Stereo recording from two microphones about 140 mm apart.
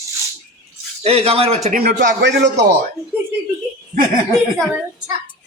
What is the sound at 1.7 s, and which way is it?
Speech, 90° right.